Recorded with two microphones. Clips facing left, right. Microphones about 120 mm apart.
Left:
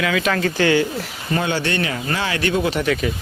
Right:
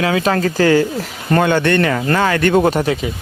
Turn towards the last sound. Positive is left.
turn(degrees=-25)  # may be behind; listen again after turning